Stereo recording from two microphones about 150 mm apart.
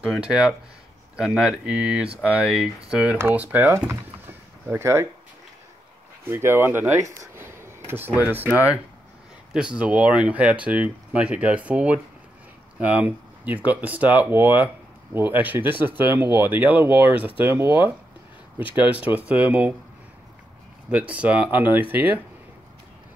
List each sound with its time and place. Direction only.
0.0 s speech: 5° right (ahead or behind)
6.3 s speech: 15° right (ahead or behind)
7.2 s a sound: 15° right (ahead or behind)
9.5 s speech: 5° right (ahead or behind)
21.1 s speech: 10° right (ahead or behind)